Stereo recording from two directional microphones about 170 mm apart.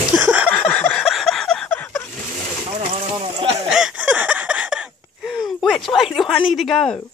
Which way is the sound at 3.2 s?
35° right (ahead or behind).